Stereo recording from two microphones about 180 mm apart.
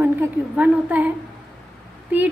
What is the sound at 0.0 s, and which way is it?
A woman's voice, 10° right (ahead or behind).